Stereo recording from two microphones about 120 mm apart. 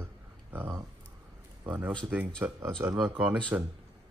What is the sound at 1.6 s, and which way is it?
A man's voice, 15° right (ahead or behind).